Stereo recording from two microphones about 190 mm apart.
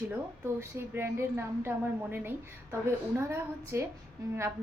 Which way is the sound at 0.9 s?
15° right (ahead or behind).